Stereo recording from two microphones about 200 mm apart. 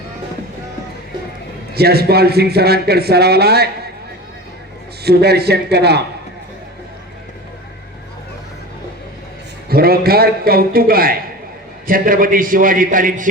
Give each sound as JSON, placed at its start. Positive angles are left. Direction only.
{"t": 1.7, "sound": "speech", "side_deg": -50}
{"t": 5.0, "sound": "a man's voice", "side_deg": -55}
{"t": 9.6, "sound": "speech", "side_deg": -50}